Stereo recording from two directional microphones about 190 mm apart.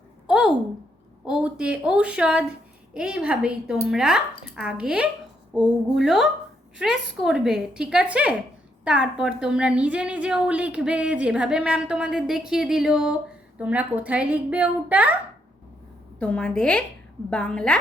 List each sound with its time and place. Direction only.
0.3 s a sound: 5° right (ahead or behind)
1.2 s a woman's voice: 5° right (ahead or behind)
16.2 s a woman's voice: 5° left (ahead or behind)